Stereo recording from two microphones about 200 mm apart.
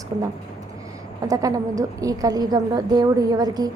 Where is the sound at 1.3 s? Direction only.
15° right (ahead or behind).